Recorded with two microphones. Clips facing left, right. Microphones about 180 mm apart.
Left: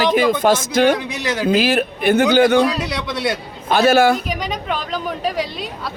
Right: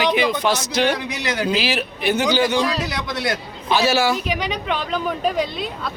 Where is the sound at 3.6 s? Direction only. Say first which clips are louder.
Left 5 dB; 55° left (ahead or behind).